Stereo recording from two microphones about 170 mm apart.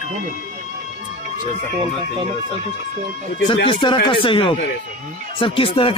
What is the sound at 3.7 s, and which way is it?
Speech, 30° left (ahead or behind).